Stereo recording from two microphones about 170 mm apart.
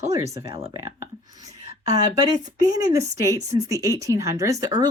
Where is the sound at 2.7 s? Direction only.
20° right (ahead or behind).